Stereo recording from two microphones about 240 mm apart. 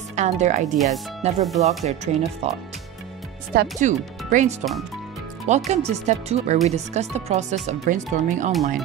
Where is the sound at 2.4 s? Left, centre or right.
Right.